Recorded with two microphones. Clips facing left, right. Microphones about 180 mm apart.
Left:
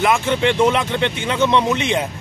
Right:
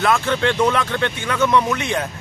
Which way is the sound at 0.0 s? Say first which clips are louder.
Left 1 dB; 15° left (ahead or behind).